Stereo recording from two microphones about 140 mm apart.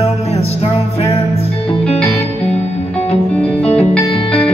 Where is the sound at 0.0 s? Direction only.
45° left (ahead or behind).